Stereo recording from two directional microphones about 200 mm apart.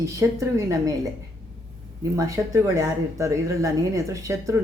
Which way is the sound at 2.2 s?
15° right (ahead or behind).